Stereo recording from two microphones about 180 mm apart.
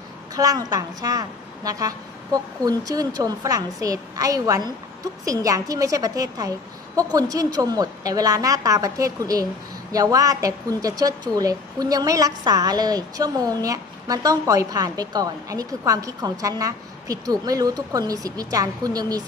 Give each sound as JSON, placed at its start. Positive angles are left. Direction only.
{"t": 0.3, "sound": "a woman's voice", "side_deg": -20}